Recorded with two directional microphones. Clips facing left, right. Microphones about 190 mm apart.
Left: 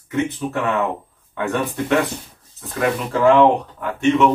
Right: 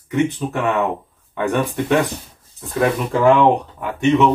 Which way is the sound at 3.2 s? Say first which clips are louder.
Even; 20° right (ahead or behind).